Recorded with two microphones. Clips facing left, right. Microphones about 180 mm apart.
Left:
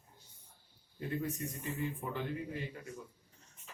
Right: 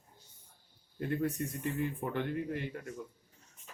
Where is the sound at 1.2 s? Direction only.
60° right (ahead or behind).